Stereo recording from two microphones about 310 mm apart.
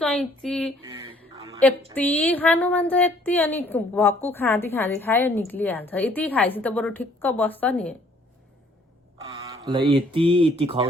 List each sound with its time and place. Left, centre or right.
0.0 s a woman's voice: centre
2.0 s a woman's voice: centre
9.3 s speech: centre